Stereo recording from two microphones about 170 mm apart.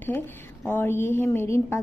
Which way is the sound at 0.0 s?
15° left (ahead or behind).